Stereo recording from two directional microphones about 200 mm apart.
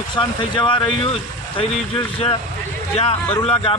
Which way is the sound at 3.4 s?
30° left (ahead or behind).